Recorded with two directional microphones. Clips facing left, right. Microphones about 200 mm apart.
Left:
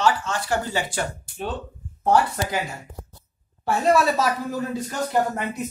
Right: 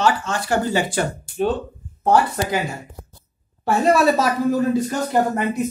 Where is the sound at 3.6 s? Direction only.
65° right (ahead or behind).